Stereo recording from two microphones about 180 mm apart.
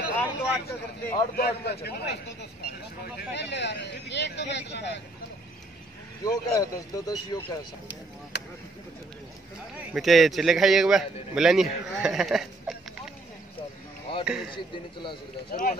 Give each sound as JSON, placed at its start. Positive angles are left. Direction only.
{"t": 0.1, "sound": "a sound", "side_deg": 10}
{"t": 1.3, "sound": "a man's voice", "side_deg": 60}
{"t": 3.2, "sound": "speech", "side_deg": 70}
{"t": 6.2, "sound": "speech", "side_deg": 20}
{"t": 9.8, "sound": "speech", "side_deg": 0}
{"t": 14.1, "sound": "a sound", "side_deg": 30}
{"t": 14.7, "sound": "speech", "side_deg": 25}